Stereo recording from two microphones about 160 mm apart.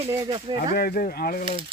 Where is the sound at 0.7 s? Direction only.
65° left (ahead or behind).